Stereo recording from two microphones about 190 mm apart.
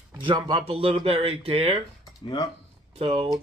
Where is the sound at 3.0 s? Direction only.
30° right (ahead or behind).